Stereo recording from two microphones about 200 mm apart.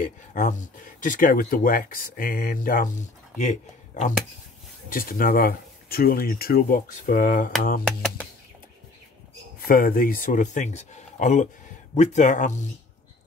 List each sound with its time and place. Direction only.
0.0 s speech: 40° left (ahead or behind)
9.7 s speech: 45° left (ahead or behind)